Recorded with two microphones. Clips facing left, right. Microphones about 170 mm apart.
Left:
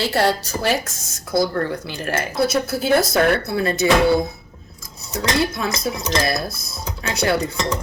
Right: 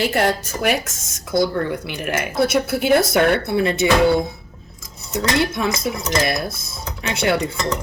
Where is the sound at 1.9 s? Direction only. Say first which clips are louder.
Right 1 dB; 20° right (ahead or behind).